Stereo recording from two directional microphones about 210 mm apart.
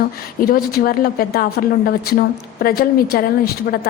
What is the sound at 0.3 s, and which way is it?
A woman's voice, 45° left (ahead or behind).